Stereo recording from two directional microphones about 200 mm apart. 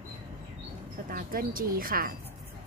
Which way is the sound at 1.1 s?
45° right (ahead or behind).